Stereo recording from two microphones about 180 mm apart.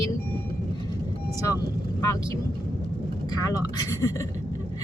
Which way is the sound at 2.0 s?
20° left (ahead or behind).